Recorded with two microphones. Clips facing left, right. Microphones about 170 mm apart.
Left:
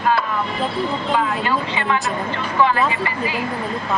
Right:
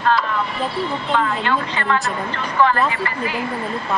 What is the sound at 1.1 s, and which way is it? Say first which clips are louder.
Speech: right 2 dB; 5° left (ahead or behind).